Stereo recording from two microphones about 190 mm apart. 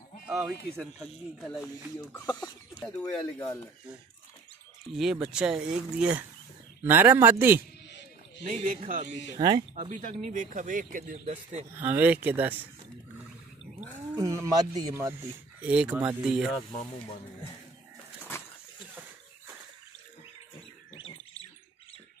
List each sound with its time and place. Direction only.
0.3 s speech: 15° right (ahead or behind)
0.7 s speech: centre (ahead or behind)
2.0 s speech: 15° left (ahead or behind)
4.9 s speech: 5° right (ahead or behind)
8.5 s speech: 40° right (ahead or behind)
9.4 s speech: 20° right (ahead or behind)
9.8 s speech: 40° right (ahead or behind)
11.7 s speech: 10° right (ahead or behind)
13.7 s speech: 15° right (ahead or behind)